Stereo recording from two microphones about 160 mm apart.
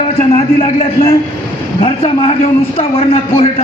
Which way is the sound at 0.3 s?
35° left (ahead or behind).